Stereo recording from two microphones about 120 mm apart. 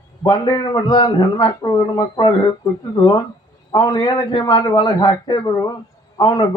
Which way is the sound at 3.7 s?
35° left (ahead or behind).